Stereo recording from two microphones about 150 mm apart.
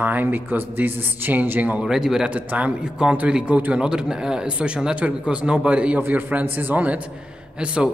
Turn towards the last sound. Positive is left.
turn(degrees=-5)  # may be behind; listen again after turning